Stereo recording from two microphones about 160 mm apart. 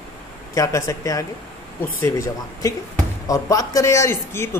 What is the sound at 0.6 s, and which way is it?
A woman's voice, 20° left (ahead or behind).